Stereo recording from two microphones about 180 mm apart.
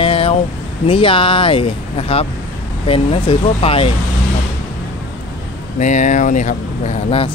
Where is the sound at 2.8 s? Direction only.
30° left (ahead or behind).